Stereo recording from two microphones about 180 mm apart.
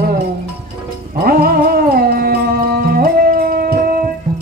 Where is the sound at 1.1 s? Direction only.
55° right (ahead or behind).